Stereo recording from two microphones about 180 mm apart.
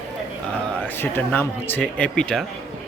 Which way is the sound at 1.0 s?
10° left (ahead or behind).